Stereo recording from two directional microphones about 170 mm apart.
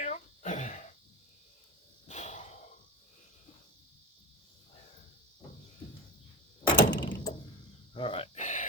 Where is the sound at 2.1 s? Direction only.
45° left (ahead or behind).